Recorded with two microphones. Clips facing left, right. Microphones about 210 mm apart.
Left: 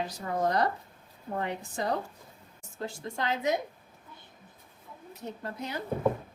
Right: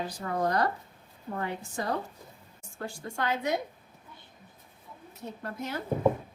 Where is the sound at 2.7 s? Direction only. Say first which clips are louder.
Even; 20° left (ahead or behind).